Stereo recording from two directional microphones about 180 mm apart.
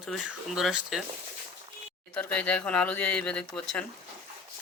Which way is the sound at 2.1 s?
5° left (ahead or behind).